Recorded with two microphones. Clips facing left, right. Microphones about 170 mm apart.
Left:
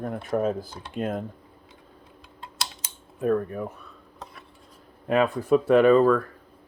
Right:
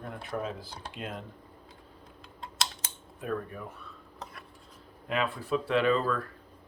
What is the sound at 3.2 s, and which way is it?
Speech, 45° left (ahead or behind).